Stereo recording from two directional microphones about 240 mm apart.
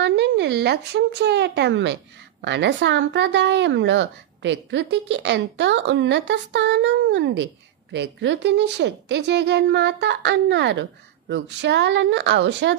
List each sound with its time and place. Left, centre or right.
0.0 s a woman's voice: right